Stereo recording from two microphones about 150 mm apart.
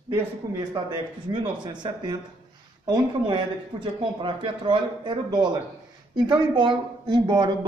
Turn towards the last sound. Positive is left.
turn(degrees=-30)  # may be behind; listen again after turning